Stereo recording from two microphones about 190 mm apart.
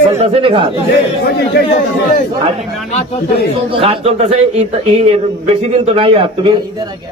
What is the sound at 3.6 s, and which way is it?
Speech, 30° right (ahead or behind).